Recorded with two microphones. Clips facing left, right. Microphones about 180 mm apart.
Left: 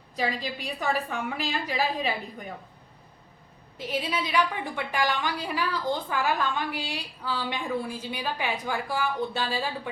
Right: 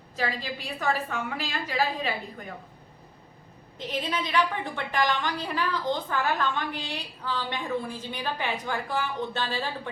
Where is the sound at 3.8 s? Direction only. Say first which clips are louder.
Left 1 dB; 10° left (ahead or behind).